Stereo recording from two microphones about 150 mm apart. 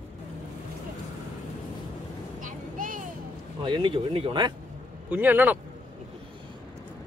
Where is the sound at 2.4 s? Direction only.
65° right (ahead or behind).